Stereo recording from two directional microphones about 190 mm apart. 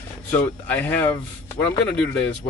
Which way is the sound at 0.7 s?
10° left (ahead or behind).